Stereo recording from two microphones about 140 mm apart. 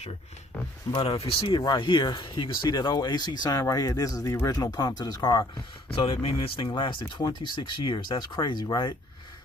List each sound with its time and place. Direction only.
0.9 s speech: 40° left (ahead or behind)
5.9 s speech: 40° left (ahead or behind)